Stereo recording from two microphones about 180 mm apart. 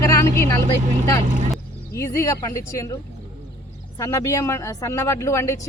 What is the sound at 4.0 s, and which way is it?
Speech, 15° left (ahead or behind).